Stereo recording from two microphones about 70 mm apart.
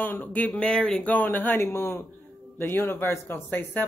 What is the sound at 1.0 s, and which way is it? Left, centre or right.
Speech, left.